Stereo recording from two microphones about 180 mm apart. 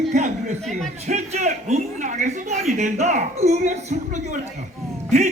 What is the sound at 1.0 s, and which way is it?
A man's voice, 40° right (ahead or behind).